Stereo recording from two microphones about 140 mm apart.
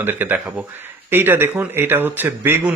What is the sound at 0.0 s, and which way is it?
Speech, 15° right (ahead or behind).